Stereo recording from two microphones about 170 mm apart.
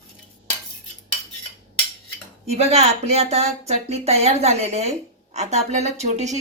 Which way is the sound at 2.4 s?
40° right (ahead or behind).